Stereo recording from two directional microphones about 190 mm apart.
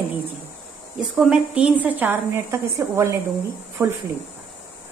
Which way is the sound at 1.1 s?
Centre (ahead or behind).